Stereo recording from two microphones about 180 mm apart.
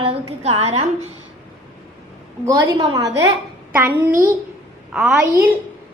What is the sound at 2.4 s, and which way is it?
A woman's voice, 20° right (ahead or behind).